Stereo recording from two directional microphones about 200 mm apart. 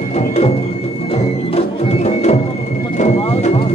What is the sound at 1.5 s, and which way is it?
Music, 35° left (ahead or behind).